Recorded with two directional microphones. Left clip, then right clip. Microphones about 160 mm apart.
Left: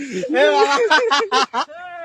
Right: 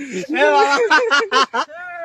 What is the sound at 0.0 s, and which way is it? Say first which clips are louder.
Speech: left 1 dB; 25° left (ahead or behind).